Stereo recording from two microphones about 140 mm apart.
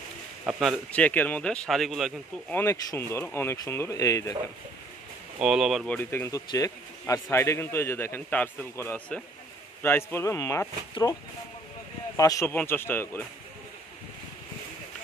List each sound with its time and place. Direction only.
0.5 s speech: centre (ahead or behind)
0.9 s a man's voice: 10° left (ahead or behind)
2.5 s speech: 20° left (ahead or behind)
5.4 s speech: 5° right (ahead or behind)
5.9 s a man's voice: 15° left (ahead or behind)
12.2 s a man's voice: 25° left (ahead or behind)